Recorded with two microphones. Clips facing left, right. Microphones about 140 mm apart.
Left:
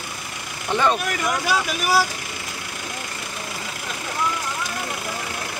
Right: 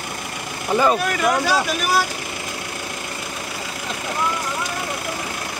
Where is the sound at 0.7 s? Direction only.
5° right (ahead or behind).